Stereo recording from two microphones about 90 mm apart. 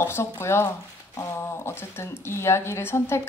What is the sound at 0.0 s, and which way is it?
Speech, 30° left (ahead or behind).